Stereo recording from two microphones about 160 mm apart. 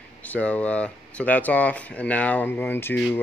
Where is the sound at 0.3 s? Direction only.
10° left (ahead or behind).